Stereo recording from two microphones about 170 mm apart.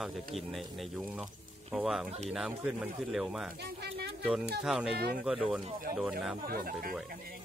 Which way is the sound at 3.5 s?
75° right (ahead or behind).